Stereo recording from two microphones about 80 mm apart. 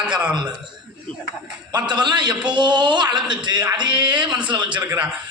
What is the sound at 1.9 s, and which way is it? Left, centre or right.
A man's voice, right.